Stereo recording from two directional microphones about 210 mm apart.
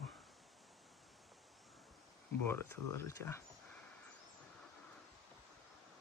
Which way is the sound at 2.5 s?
15° left (ahead or behind).